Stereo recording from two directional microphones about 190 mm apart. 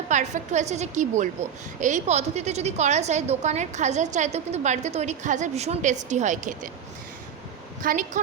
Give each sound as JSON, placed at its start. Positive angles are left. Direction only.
{"t": 0.1, "sound": "a woman's voice", "side_deg": -40}
{"t": 7.8, "sound": "a woman's voice", "side_deg": -45}